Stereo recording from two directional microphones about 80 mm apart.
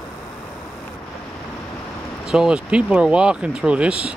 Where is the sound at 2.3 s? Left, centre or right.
Centre.